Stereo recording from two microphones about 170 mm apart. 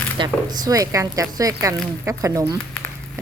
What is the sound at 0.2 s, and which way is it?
Speech, 25° right (ahead or behind).